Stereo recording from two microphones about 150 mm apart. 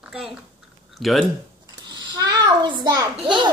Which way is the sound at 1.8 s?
30° right (ahead or behind).